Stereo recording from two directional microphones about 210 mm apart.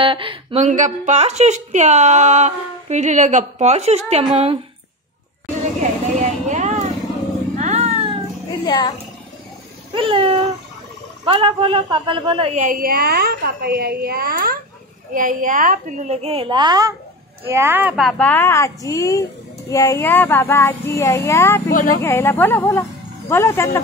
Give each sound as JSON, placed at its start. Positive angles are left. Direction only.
{"t": 0.0, "sound": "a woman's voice", "side_deg": -25}
{"t": 5.8, "sound": "vehicle", "side_deg": -35}
{"t": 7.5, "sound": "a sound", "side_deg": -35}
{"t": 8.6, "sound": "a child's voice", "side_deg": 20}
{"t": 9.9, "sound": "a woman's voice", "side_deg": -25}